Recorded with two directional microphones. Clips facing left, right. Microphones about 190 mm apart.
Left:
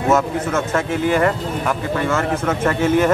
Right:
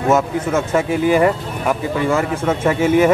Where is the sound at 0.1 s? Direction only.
10° right (ahead or behind).